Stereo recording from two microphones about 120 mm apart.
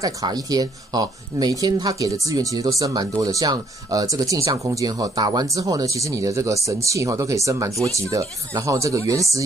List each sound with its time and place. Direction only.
0.0 s speech: 30° right (ahead or behind)